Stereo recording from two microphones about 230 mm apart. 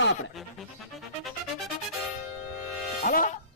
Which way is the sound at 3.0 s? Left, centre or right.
Left.